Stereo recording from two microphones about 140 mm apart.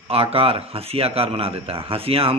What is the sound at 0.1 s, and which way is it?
A man's voice, 45° right (ahead or behind).